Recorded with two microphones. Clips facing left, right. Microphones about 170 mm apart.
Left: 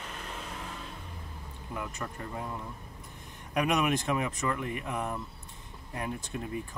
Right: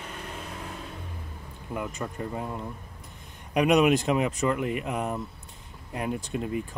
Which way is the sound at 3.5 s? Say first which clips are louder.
Right 7 dB; 20° right (ahead or behind).